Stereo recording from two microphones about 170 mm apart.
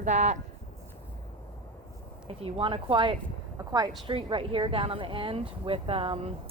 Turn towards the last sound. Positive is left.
turn(degrees=-35)  # may be behind; listen again after turning